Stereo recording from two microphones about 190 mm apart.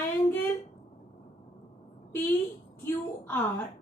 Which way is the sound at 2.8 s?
10° left (ahead or behind).